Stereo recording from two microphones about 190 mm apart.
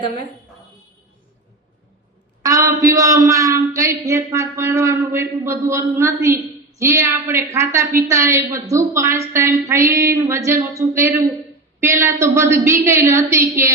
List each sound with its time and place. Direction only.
2.4 s a man's voice: 15° right (ahead or behind)